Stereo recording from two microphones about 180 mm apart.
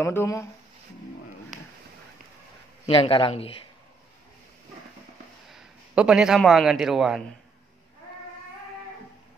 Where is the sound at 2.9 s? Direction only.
30° left (ahead or behind).